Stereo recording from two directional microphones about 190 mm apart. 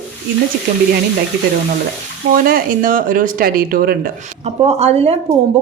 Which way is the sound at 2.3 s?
50° right (ahead or behind).